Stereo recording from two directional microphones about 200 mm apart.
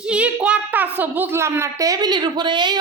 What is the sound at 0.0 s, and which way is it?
A child's voice, 5° right (ahead or behind).